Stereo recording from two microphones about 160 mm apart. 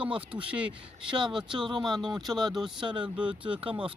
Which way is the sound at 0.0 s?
35° right (ahead or behind).